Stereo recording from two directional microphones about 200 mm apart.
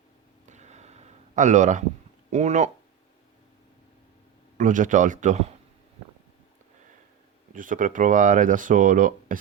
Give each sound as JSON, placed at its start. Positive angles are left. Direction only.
{"t": 0.4, "sound": "a sound", "side_deg": -35}
{"t": 2.3, "sound": "speech", "side_deg": -35}
{"t": 4.5, "sound": "speech", "side_deg": -40}
{"t": 7.5, "sound": "speech", "side_deg": -40}